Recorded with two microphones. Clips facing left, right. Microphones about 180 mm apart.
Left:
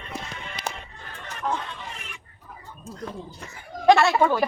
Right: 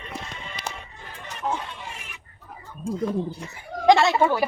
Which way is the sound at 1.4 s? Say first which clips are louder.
Even; 10° right (ahead or behind).